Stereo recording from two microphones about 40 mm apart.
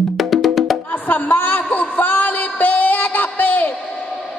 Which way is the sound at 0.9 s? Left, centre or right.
Left.